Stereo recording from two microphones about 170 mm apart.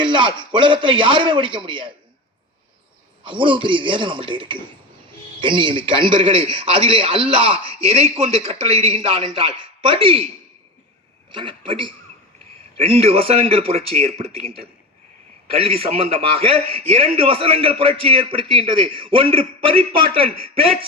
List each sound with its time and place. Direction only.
0.0 s a man's voice: 30° right (ahead or behind)
3.2 s a man's voice: 30° right (ahead or behind)
11.3 s a man's voice: 30° right (ahead or behind)
15.5 s a man's voice: 35° right (ahead or behind)